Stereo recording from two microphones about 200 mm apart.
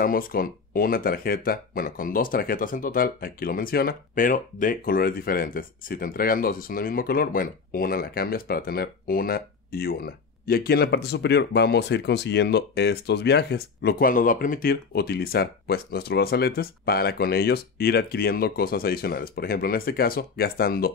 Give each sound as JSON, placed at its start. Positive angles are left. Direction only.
{"t": 0.0, "sound": "speech", "side_deg": 45}